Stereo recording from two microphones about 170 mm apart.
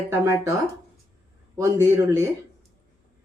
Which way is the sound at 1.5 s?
15° right (ahead or behind).